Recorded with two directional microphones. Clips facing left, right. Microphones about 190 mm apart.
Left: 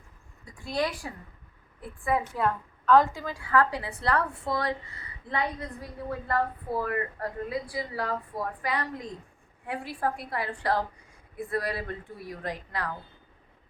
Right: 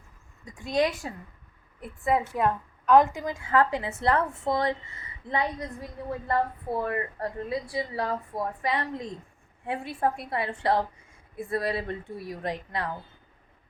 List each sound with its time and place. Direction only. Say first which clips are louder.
0.5 s a woman's voice: right 4 dB; 20° right (ahead or behind)